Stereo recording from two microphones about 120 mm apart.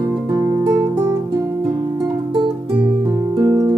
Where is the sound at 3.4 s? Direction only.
30° right (ahead or behind).